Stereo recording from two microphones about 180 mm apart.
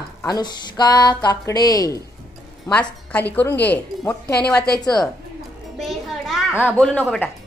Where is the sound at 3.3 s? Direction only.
10° left (ahead or behind).